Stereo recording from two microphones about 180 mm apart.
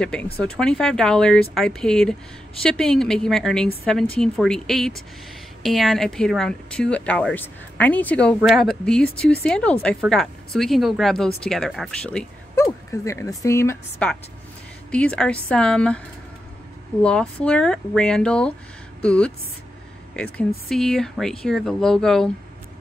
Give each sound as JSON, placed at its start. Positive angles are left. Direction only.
{"t": 0.0, "sound": "speech", "side_deg": 5}
{"t": 12.5, "sound": "a woman's voice", "side_deg": 15}
{"t": 17.0, "sound": "speech", "side_deg": 5}
{"t": 20.7, "sound": "speech", "side_deg": 5}